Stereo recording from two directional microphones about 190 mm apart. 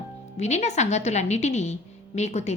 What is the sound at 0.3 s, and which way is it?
A woman's voice, 35° left (ahead or behind).